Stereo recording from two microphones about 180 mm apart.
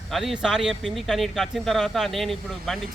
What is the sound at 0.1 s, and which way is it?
Speech, centre (ahead or behind).